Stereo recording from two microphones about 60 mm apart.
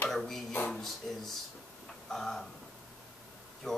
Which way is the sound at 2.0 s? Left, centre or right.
Centre.